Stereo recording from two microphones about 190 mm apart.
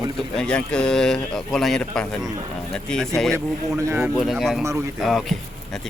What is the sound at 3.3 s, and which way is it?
Speech, 15° right (ahead or behind).